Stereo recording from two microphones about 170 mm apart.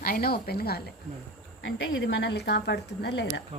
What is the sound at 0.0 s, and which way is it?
Speech, 60° left (ahead or behind).